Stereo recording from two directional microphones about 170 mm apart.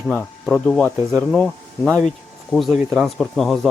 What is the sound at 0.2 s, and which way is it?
Speech, 10° left (ahead or behind).